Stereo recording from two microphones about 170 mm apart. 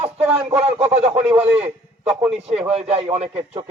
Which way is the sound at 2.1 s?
5° right (ahead or behind).